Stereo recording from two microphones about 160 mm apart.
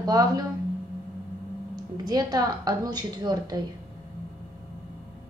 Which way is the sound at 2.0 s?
25° right (ahead or behind).